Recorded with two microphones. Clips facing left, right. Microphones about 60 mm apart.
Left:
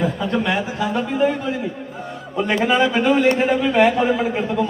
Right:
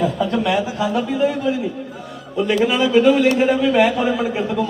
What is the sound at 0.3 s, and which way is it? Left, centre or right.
Speech, left.